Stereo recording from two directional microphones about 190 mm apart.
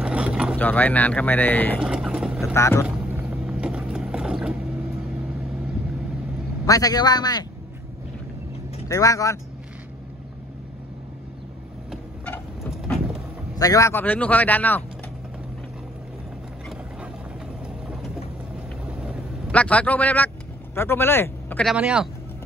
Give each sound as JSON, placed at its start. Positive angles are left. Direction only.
{"t": 0.0, "sound": "vehicle", "side_deg": -5}
{"t": 0.6, "sound": "speech", "side_deg": 10}
{"t": 1.8, "sound": "vehicle", "side_deg": -5}
{"t": 2.5, "sound": "speech", "side_deg": 15}
{"t": 2.8, "sound": "mechanisms", "side_deg": -5}
{"t": 6.6, "sound": "a man's voice", "side_deg": 20}
{"t": 8.8, "sound": "speech", "side_deg": 15}
{"t": 12.3, "sound": "vehicle", "side_deg": 10}
{"t": 13.6, "sound": "speech", "side_deg": 15}
{"t": 18.9, "sound": "quack", "side_deg": -5}
{"t": 19.5, "sound": "speech", "side_deg": 5}
{"t": 21.7, "sound": "speech", "side_deg": -5}